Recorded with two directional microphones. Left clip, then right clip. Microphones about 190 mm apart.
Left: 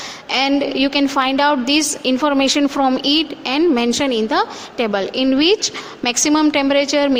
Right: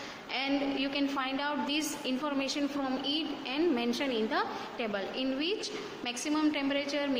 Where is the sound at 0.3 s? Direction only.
50° left (ahead or behind).